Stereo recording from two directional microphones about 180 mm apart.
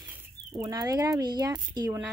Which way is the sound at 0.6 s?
20° right (ahead or behind).